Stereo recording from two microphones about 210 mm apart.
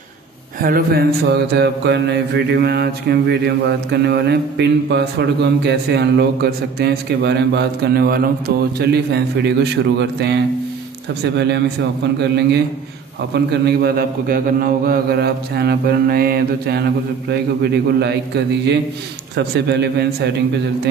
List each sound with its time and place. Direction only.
0.6 s mantra: 45° right (ahead or behind)
11.3 s speech: 55° right (ahead or behind)
12.2 s mantra: 55° right (ahead or behind)
17.9 s mantra: 55° right (ahead or behind)